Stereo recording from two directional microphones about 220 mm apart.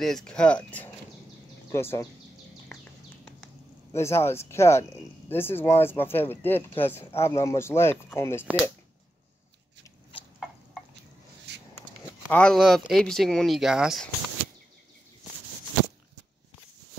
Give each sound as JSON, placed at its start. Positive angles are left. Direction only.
{"t": 0.0, "sound": "speech", "side_deg": 0}
{"t": 3.9, "sound": "speech", "side_deg": 10}
{"t": 11.5, "sound": "a sound", "side_deg": -50}
{"t": 12.3, "sound": "speech", "side_deg": 5}